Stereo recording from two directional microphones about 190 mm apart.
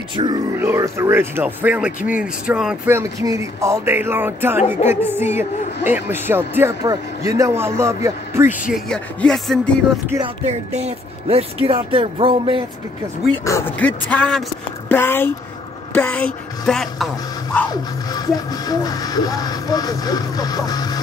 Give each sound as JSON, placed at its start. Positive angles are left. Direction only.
{"t": 0.1, "sound": "speech", "side_deg": -25}
{"t": 8.7, "sound": "music", "side_deg": 5}
{"t": 10.0, "sound": "speech", "side_deg": -20}
{"t": 10.4, "sound": "speech", "side_deg": -35}
{"t": 13.4, "sound": "a woman's voice", "side_deg": 15}
{"t": 17.6, "sound": "music", "side_deg": 20}